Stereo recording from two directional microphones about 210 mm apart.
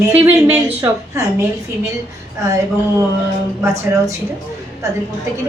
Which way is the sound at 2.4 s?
15° right (ahead or behind).